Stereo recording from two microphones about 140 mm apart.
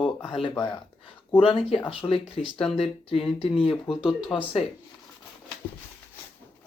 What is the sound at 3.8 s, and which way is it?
Speech, 5° right (ahead or behind).